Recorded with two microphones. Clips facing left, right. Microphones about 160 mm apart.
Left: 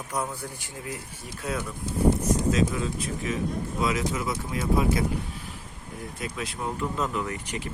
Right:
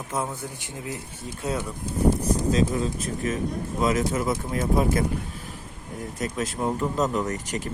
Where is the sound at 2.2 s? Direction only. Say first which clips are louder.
Right 1 dB; 35° right (ahead or behind).